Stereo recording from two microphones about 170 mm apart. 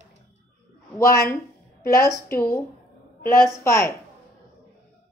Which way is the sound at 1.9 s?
15° left (ahead or behind).